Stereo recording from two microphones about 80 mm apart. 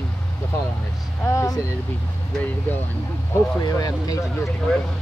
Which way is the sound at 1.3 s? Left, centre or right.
Left.